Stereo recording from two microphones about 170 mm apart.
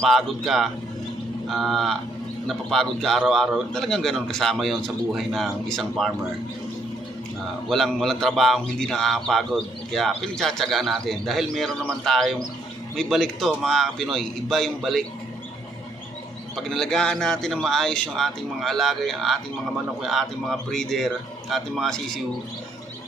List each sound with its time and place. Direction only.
0.0 s a man's voice: centre (ahead or behind)
7.7 s a man's voice: centre (ahead or behind)
16.6 s a man's voice: centre (ahead or behind)